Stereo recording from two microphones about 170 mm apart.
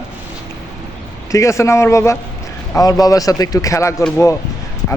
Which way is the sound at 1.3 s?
20° left (ahead or behind).